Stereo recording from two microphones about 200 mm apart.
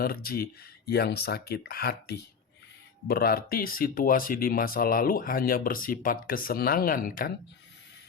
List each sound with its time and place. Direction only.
0.0 s speech: 50° left (ahead or behind)